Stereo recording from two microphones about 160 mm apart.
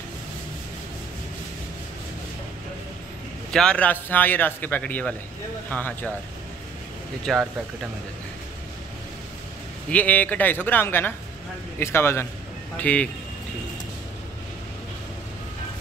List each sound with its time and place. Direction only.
3.5 s a man's voice: 5° left (ahead or behind)
7.3 s speech: centre (ahead or behind)
9.8 s a man's voice: 10° left (ahead or behind)